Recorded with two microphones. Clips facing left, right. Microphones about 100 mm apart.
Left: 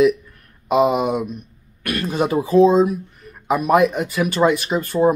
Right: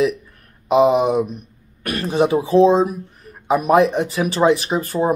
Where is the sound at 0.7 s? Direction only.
30° right (ahead or behind).